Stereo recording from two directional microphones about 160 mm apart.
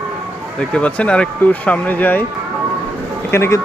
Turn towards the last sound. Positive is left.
turn(degrees=15)  # may be behind; listen again after turning